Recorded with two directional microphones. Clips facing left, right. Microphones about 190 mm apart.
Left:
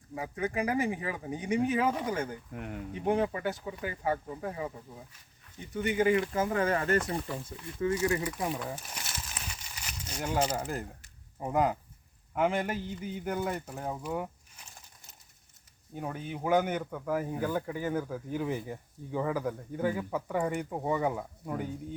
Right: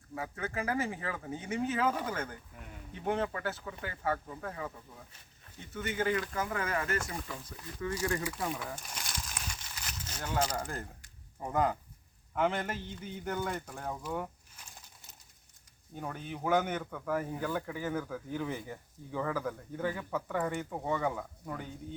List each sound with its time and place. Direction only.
0.1 s speech: 15° left (ahead or behind)
2.5 s speech: 65° left (ahead or behind)
2.9 s speech: 10° left (ahead or behind)
6.3 s speech: 25° left (ahead or behind)
8.5 s crumpling: 5° left (ahead or behind)
10.7 s speech: 5° left (ahead or behind)
16.0 s speech: 5° left (ahead or behind)